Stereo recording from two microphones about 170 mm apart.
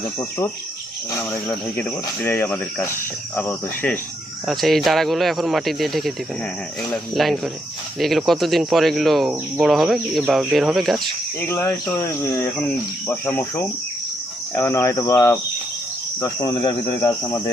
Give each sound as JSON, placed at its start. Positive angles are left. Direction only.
{"t": 0.2, "sound": "speech", "side_deg": 15}
{"t": 4.4, "sound": "speech", "side_deg": 0}
{"t": 11.3, "sound": "speech", "side_deg": 15}